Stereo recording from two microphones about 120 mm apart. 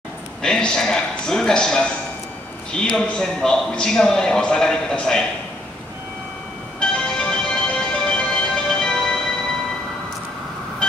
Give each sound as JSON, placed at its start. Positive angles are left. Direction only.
{"t": 0.4, "sound": "a man's voice", "side_deg": 5}
{"t": 6.8, "sound": "music", "side_deg": 5}